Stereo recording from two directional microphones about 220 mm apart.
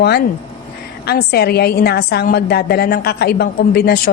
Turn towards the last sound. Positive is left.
turn(degrees=45)  # may be behind; listen again after turning